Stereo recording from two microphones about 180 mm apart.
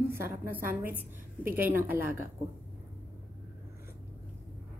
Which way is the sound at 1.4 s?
10° right (ahead or behind).